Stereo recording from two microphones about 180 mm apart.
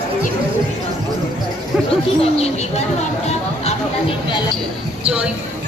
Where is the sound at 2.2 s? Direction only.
35° left (ahead or behind).